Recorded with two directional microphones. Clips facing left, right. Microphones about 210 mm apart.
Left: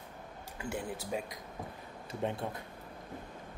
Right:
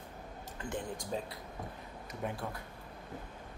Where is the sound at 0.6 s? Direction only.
10° left (ahead or behind).